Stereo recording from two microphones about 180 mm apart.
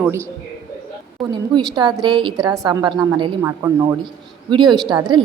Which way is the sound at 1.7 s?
25° right (ahead or behind).